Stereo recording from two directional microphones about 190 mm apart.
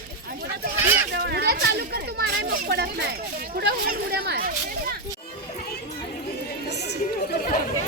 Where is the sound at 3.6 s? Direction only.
55° right (ahead or behind).